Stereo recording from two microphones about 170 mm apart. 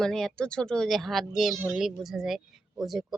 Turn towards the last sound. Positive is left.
turn(degrees=0)  # may be behind; listen again after turning